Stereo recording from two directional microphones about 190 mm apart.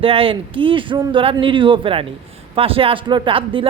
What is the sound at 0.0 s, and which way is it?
A man's voice, 30° right (ahead or behind).